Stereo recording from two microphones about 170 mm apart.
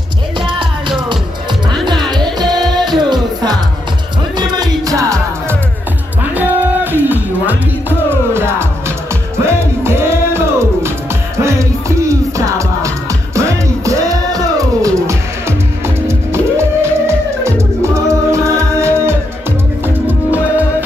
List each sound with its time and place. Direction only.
0.5 s music: 30° right (ahead or behind); by 20.6 s 10° right (ahead or behind)